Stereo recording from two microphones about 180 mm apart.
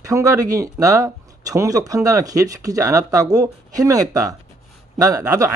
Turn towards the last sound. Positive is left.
turn(degrees=-15)  # may be behind; listen again after turning